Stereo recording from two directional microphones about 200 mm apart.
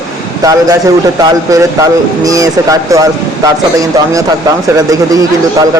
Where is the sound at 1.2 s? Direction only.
15° right (ahead or behind).